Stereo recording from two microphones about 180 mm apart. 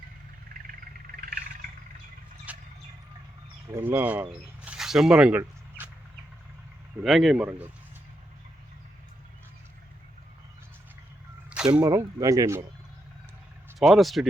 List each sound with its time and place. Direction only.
1.1 s a sound: 55° right (ahead or behind)
2.5 s a sound: 10° right (ahead or behind)
3.7 s speech: 10° right (ahead or behind)
7.0 s speech: centre (ahead or behind)
11.7 s speech: 15° right (ahead or behind)
13.7 s speech: centre (ahead or behind)